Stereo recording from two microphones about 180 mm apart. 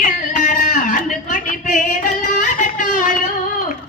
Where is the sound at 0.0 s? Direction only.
45° left (ahead or behind).